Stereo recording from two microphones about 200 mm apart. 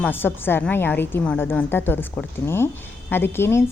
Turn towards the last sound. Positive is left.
turn(degrees=10)  # may be behind; listen again after turning